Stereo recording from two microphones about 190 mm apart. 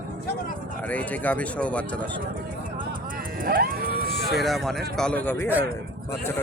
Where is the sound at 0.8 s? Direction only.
5° left (ahead or behind).